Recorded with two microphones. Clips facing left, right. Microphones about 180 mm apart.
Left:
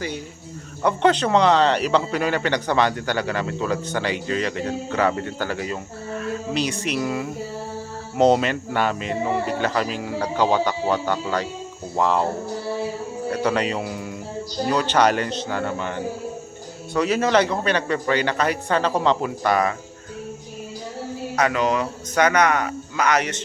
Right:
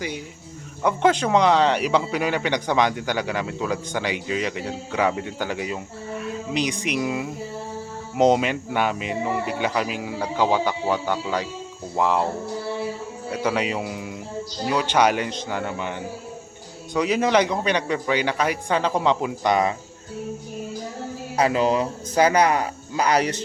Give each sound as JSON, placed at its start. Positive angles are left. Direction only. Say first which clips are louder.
{"t": 0.8, "sound": "a man's voice", "louder": "left 1 dB", "side_deg": -10}
{"t": 13.3, "sound": "a man's voice", "louder": "left 1 dB", "side_deg": -10}
{"t": 16.9, "sound": "a man's voice", "louder": "left 1 dB", "side_deg": -15}
{"t": 21.3, "sound": "a man's voice", "louder": "right 1 dB", "side_deg": -30}